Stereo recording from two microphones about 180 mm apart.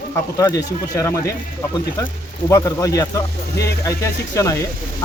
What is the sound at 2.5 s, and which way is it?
Speech, 15° left (ahead or behind).